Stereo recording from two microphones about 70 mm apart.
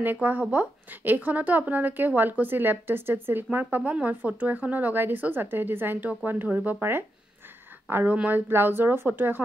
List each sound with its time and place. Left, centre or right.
0.0 s speech: right